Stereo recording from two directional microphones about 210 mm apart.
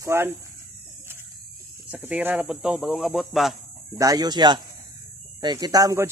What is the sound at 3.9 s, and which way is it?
Speech, 20° right (ahead or behind).